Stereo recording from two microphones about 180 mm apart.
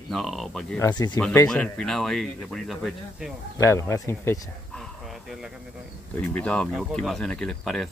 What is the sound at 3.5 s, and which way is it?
Speech, 15° left (ahead or behind).